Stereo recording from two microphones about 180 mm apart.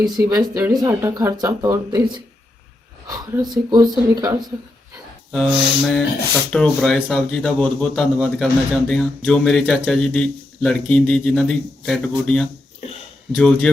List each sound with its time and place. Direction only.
0.2 s speech: 20° right (ahead or behind)
5.3 s speech: centre (ahead or behind)